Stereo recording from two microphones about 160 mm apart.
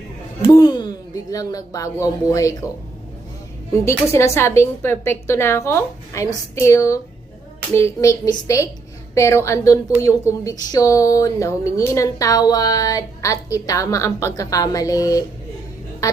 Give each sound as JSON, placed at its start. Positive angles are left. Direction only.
{"t": 0.5, "sound": "speech", "side_deg": 25}
{"t": 3.8, "sound": "a woman's voice", "side_deg": 15}